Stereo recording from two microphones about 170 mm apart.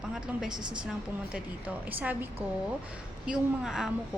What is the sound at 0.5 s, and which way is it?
Speech, 25° right (ahead or behind).